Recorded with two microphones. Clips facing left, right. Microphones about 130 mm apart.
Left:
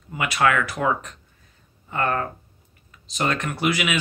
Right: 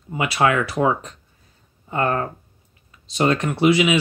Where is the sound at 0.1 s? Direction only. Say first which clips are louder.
Right 2 dB; 25° right (ahead or behind).